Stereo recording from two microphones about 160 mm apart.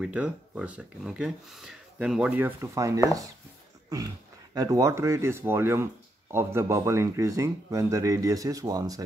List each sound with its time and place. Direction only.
0.0 s speech: 5° right (ahead or behind)
4.6 s speech: 20° right (ahead or behind)